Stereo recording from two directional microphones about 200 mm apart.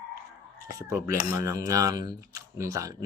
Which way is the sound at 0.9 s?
15° right (ahead or behind).